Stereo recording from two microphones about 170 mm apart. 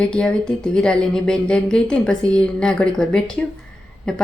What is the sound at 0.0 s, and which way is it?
A woman's voice, 5° left (ahead or behind).